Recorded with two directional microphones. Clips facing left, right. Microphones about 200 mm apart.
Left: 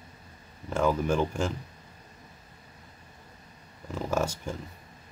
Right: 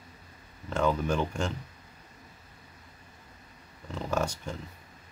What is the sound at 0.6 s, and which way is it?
Speech, 5° left (ahead or behind).